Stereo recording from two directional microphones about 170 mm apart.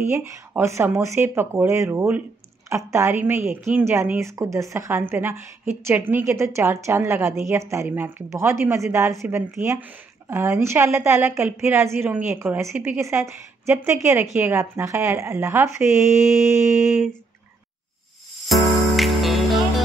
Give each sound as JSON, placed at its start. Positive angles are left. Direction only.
{"t": 0.1, "sound": "speech", "side_deg": -15}
{"t": 16.7, "sound": "a sound", "side_deg": -5}
{"t": 18.5, "sound": "music", "side_deg": 0}